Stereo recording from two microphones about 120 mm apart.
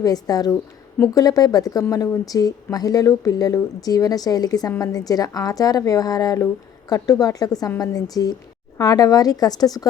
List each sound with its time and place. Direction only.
0.0 s a woman's voice: 30° left (ahead or behind)